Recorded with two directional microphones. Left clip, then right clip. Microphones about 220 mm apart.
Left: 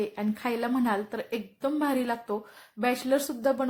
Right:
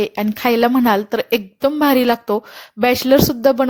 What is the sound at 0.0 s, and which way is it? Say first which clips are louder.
A woman's voice: right 13 dB; 40° right (ahead or behind).